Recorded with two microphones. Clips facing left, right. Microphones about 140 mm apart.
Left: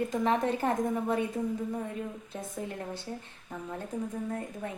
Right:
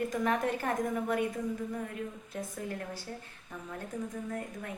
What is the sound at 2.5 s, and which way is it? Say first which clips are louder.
Speech: left 2 dB; 25° left (ahead or behind).